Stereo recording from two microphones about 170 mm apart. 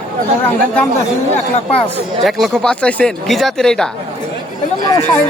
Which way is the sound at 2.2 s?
Centre (ahead or behind).